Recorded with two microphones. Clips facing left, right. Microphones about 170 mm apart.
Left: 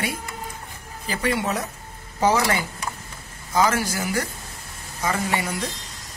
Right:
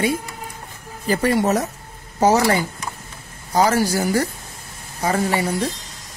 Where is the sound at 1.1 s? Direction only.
45° right (ahead or behind).